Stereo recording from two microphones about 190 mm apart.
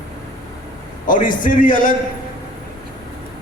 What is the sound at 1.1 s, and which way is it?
Speech, 45° left (ahead or behind).